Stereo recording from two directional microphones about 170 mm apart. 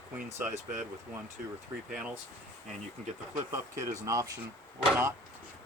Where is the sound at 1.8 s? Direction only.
5° right (ahead or behind).